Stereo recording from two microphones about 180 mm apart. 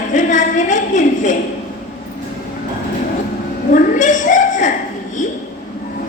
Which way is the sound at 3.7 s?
45° left (ahead or behind).